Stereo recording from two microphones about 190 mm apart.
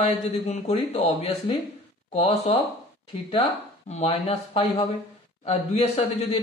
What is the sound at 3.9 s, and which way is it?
Speech, 30° left (ahead or behind).